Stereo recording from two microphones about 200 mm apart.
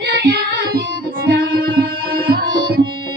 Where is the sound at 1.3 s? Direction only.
50° right (ahead or behind).